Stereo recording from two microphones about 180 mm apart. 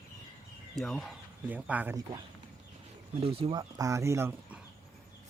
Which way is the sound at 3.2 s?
35° right (ahead or behind).